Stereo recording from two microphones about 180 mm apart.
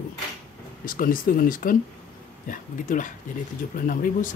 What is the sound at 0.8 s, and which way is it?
Speech, 50° left (ahead or behind).